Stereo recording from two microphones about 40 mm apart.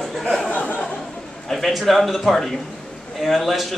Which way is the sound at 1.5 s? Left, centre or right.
Centre.